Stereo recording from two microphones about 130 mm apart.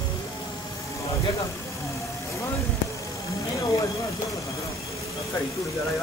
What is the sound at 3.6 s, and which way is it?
Speech, 25° left (ahead or behind).